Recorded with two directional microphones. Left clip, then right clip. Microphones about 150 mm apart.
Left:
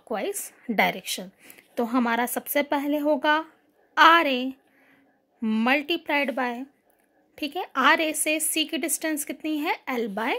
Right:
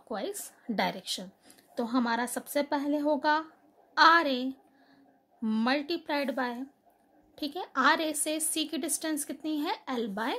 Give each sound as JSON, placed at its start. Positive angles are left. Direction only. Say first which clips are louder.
{"t": 0.1, "sound": "a woman's voice", "louder": "left 6 dB", "side_deg": 30}